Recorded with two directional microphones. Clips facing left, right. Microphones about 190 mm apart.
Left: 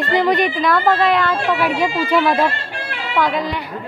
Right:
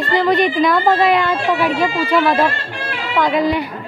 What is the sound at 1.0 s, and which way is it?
Speech, 5° right (ahead or behind).